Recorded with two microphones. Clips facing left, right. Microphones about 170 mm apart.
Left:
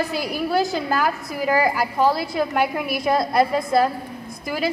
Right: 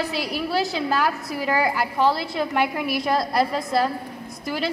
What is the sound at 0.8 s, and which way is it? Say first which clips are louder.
A woman's voice: left 1 dB; 5° left (ahead or behind).